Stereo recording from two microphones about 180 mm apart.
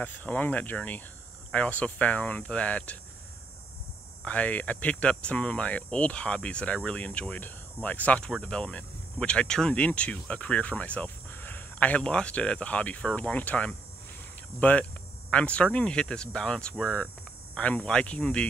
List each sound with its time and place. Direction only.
0.0 s speech: 10° left (ahead or behind)
4.2 s speech: 10° left (ahead or behind)